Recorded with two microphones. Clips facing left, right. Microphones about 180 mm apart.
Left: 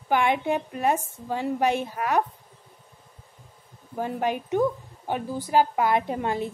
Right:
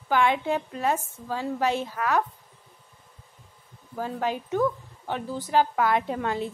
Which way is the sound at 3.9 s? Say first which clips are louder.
Left 2 dB; 20° left (ahead or behind).